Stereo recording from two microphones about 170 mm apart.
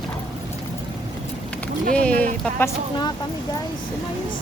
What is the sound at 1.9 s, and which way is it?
Music, 10° left (ahead or behind).